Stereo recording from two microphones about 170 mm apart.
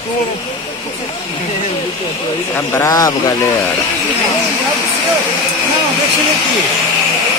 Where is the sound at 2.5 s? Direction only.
15° left (ahead or behind).